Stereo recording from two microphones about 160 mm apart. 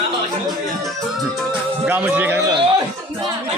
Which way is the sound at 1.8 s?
10° right (ahead or behind).